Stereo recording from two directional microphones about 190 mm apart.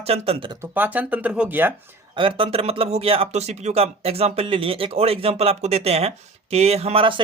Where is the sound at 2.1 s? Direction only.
30° right (ahead or behind).